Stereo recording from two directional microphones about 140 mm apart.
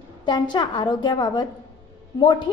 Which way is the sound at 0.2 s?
35° left (ahead or behind).